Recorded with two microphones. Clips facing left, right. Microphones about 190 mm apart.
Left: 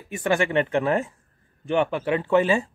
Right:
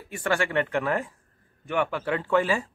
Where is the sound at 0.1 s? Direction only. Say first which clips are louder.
Left 4 dB; 20° left (ahead or behind).